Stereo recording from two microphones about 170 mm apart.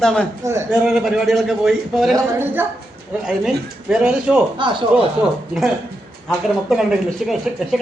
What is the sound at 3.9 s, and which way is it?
Speech, 5° right (ahead or behind).